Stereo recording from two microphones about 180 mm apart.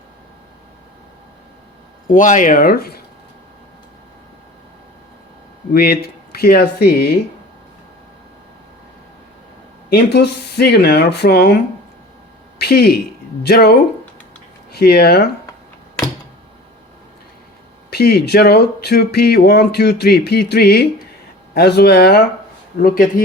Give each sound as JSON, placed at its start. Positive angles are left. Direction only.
{"t": 2.0, "sound": "speech", "side_deg": 45}
{"t": 5.7, "sound": "speech", "side_deg": 60}
{"t": 9.9, "sound": "speech", "side_deg": 65}
{"t": 12.5, "sound": "speech", "side_deg": 60}
{"t": 17.9, "sound": "speech", "side_deg": 65}